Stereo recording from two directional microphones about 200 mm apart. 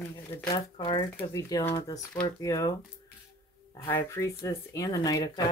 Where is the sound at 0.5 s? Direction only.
25° left (ahead or behind).